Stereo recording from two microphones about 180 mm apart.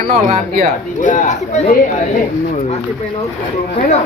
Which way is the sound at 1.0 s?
45° left (ahead or behind).